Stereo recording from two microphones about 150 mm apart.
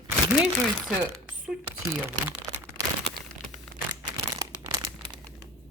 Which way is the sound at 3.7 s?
65° right (ahead or behind).